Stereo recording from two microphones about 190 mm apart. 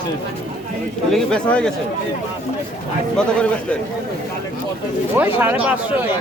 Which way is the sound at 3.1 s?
5° left (ahead or behind).